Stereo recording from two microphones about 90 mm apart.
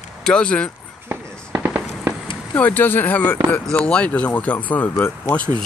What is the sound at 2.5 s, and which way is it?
Speech, 20° left (ahead or behind).